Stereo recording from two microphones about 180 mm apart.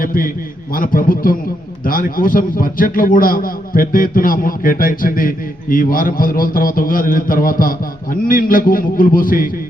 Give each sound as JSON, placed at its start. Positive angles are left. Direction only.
{"t": 0.0, "sound": "a man's voice", "side_deg": 50}